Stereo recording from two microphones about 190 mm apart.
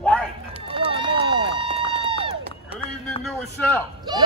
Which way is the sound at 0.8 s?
25° right (ahead or behind).